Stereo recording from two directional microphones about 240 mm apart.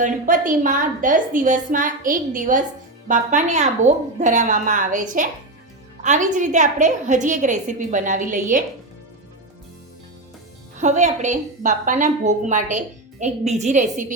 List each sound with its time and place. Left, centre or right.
0.0 s a woman's voice: right
10.8 s a woman's voice: right